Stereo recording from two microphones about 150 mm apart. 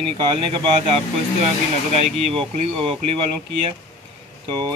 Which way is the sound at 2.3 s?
35° right (ahead or behind).